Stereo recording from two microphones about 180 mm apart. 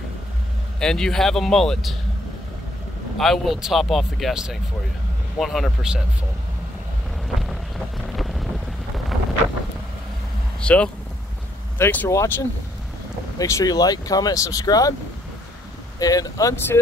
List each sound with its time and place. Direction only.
0.7 s speech: 5° left (ahead or behind)
3.2 s speech: centre (ahead or behind)
7.2 s boat: centre (ahead or behind)
8.1 s wind noise: centre (ahead or behind)
10.6 s speech: 5° left (ahead or behind)
16.0 s speech: 20° left (ahead or behind)